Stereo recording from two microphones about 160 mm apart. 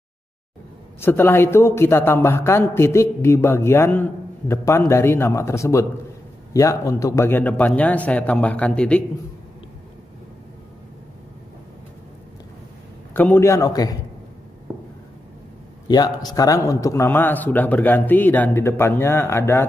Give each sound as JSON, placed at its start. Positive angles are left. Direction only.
{"t": 1.0, "sound": "a man's voice", "side_deg": 15}
{"t": 13.1, "sound": "a man's voice", "side_deg": 10}
{"t": 15.9, "sound": "a man's voice", "side_deg": 25}